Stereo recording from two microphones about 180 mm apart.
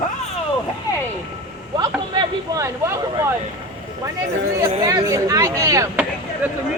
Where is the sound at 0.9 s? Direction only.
20° left (ahead or behind).